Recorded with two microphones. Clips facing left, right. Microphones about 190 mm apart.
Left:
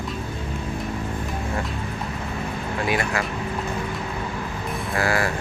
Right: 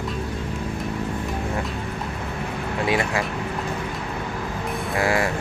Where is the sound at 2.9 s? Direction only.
25° right (ahead or behind).